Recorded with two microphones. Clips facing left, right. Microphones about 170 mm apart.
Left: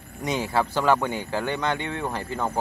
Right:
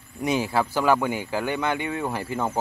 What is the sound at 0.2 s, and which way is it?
Speech, 10° right (ahead or behind).